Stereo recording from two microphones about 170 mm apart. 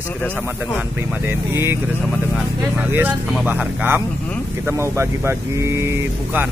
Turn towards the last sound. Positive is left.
turn(degrees=-15)  # may be behind; listen again after turning